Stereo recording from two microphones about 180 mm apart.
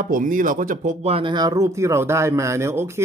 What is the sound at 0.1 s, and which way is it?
Speech, 50° right (ahead or behind).